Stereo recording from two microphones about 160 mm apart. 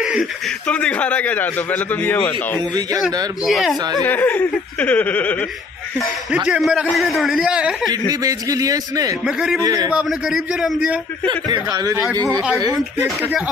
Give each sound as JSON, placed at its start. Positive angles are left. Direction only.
{"t": 0.0, "sound": "chuckle", "side_deg": -5}
{"t": 0.7, "sound": "a man's voice", "side_deg": 10}
{"t": 3.4, "sound": "a man's voice", "side_deg": 0}
{"t": 6.3, "sound": "a man's voice", "side_deg": -5}
{"t": 8.1, "sound": "speech", "side_deg": -20}
{"t": 9.2, "sound": "a man's voice", "side_deg": 0}
{"t": 9.6, "sound": "speech", "side_deg": -25}
{"t": 9.9, "sound": "a man's voice", "side_deg": 0}
{"t": 11.2, "sound": "speech", "side_deg": -25}
{"t": 12.1, "sound": "a man's voice", "side_deg": 10}
{"t": 12.5, "sound": "speech", "side_deg": -25}